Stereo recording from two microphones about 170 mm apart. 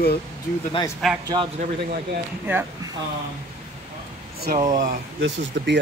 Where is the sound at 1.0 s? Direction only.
Centre (ahead or behind).